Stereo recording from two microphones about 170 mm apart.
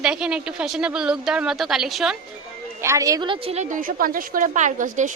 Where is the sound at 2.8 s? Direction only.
20° right (ahead or behind).